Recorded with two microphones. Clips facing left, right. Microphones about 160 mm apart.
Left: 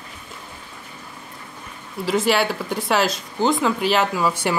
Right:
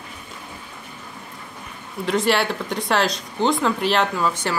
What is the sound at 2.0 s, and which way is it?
Speech, centre (ahead or behind).